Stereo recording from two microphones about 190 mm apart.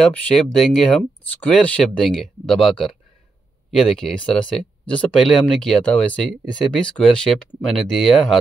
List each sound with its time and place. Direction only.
0.0 s speech: 5° left (ahead or behind)